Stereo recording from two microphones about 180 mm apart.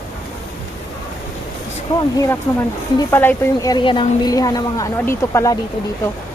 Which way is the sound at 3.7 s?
25° left (ahead or behind).